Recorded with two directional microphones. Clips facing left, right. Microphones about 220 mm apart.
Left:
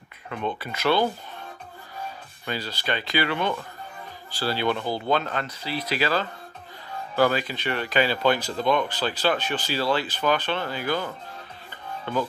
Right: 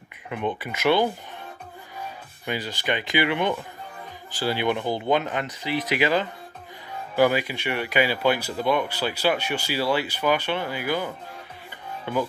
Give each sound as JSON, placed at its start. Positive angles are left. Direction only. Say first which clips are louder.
{"t": 0.3, "sound": "speech", "louder": "right 2 dB", "side_deg": -15}
{"t": 2.4, "sound": "speech", "louder": "right 2 dB", "side_deg": -15}
{"t": 12.1, "sound": "speech", "louder": "right 1 dB", "side_deg": -15}